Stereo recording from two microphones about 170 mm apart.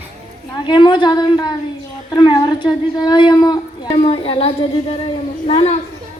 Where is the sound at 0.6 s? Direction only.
25° left (ahead or behind).